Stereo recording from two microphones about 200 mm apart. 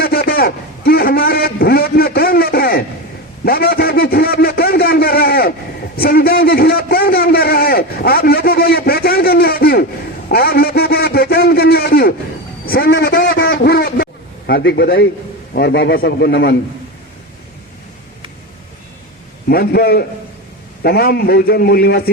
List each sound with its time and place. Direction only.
0.0 s a sound: 50° left (ahead or behind)
15.5 s a man's voice: 55° left (ahead or behind)
19.5 s a man's voice: 50° left (ahead or behind)